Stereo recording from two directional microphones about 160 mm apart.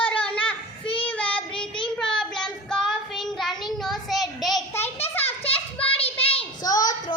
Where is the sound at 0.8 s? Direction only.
35° left (ahead or behind).